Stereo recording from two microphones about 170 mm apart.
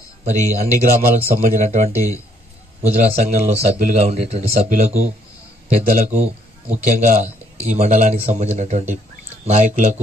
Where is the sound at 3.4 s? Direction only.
40° right (ahead or behind).